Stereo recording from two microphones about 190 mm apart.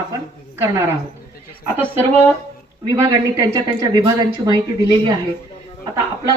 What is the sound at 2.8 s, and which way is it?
Speech, 20° right (ahead or behind).